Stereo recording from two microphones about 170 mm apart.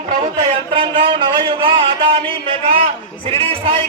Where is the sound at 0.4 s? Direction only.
30° right (ahead or behind).